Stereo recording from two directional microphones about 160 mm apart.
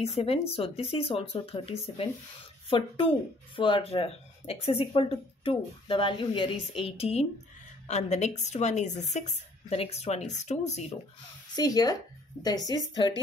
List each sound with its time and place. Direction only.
0.2 s a woman's voice: 35° left (ahead or behind)
11.5 s a woman's voice: 25° left (ahead or behind)